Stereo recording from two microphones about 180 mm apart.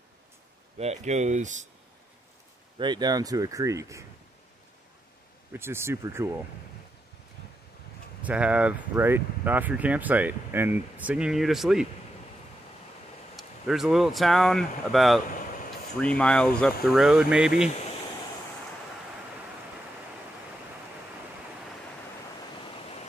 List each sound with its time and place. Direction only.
0.7 s speech: 40° right (ahead or behind)
2.8 s speech: 25° right (ahead or behind)
5.5 s speech: 15° right (ahead or behind)
8.2 s speech: 5° right (ahead or behind)
13.4 s speech: centre (ahead or behind)